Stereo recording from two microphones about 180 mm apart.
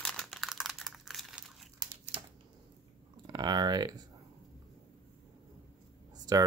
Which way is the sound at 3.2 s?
20° right (ahead or behind).